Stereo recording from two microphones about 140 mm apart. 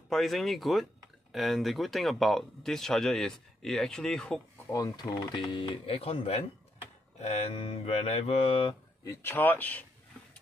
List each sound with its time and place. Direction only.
0.1 s speech: centre (ahead or behind)
4.7 s speech: 25° left (ahead or behind)
9.0 s speech: 20° left (ahead or behind)